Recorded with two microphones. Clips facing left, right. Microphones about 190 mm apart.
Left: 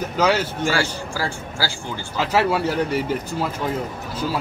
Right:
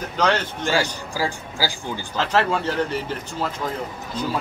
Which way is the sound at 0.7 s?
15° right (ahead or behind).